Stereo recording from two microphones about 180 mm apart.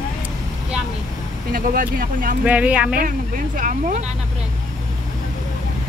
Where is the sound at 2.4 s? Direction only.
10° right (ahead or behind).